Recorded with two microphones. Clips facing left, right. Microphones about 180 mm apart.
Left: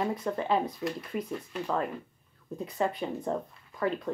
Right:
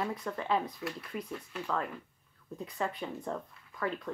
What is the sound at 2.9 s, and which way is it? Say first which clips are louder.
Speech: left 5 dB; 20° left (ahead or behind).